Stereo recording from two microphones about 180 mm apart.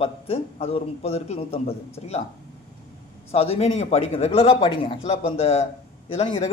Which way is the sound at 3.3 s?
35° left (ahead or behind).